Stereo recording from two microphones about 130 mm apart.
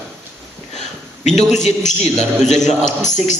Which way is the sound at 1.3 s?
65° left (ahead or behind).